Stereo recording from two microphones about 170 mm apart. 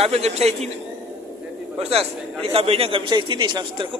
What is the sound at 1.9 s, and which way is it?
A man's voice, 35° right (ahead or behind).